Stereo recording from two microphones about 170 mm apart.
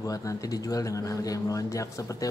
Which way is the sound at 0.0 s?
20° left (ahead or behind).